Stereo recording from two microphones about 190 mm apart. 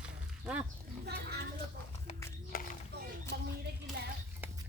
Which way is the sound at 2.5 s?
50° left (ahead or behind).